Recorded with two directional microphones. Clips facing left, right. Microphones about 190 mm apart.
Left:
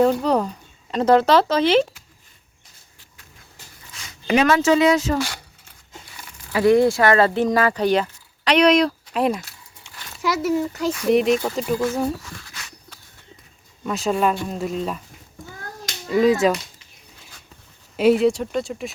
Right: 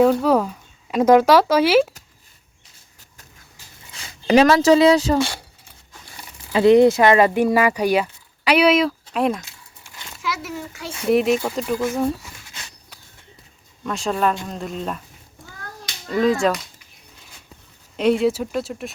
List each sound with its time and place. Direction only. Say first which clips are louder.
0.0 s speech: right 2 dB; 5° right (ahead or behind)
4.0 s speech: right 4 dB; 35° right (ahead or behind)
6.5 s speech: right 3 dB; 20° right (ahead or behind); by 9.4 s centre (ahead or behind)
10.2 s a child's voice: left 8 dB; 40° left (ahead or behind)
11.1 s speech: right 1 dB; centre (ahead or behind)
12.2 s dog: left 2 dB; 20° right (ahead or behind)
13.8 s speech: left 1 dB; 5° left (ahead or behind)
16.0 s speech: left 2 dB; 5° left (ahead or behind)
17.9 s speech: left 2 dB; 5° left (ahead or behind)